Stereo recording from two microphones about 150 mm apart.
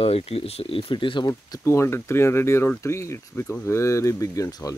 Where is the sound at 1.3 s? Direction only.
20° left (ahead or behind).